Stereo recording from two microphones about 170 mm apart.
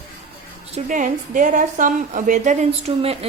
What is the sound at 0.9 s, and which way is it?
A woman's voice, 50° right (ahead or behind).